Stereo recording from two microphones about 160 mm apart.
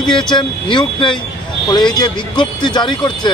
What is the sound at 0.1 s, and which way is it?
Speech, 30° left (ahead or behind).